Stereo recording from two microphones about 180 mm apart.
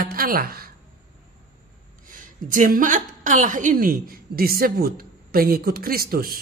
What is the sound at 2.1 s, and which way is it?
A woman's voice, 45° right (ahead or behind).